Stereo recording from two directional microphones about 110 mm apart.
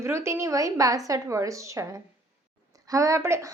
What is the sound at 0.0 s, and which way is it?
A woman's voice, 25° right (ahead or behind).